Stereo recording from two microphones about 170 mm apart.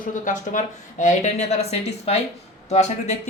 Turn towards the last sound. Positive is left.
turn(degrees=40)  # may be behind; listen again after turning